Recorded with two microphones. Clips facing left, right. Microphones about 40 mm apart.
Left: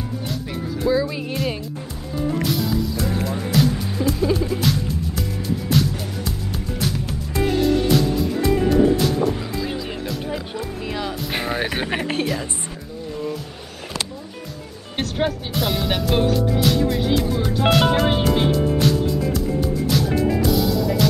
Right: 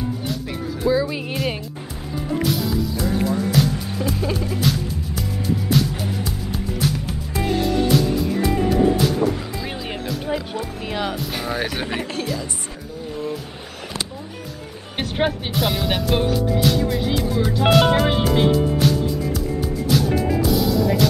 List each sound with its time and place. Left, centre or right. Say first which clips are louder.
0.5 s music: even; centre
10.9 s music: right 3 dB; right
11.5 s speech: even; centre
15.5 s music: right 1 dB; centre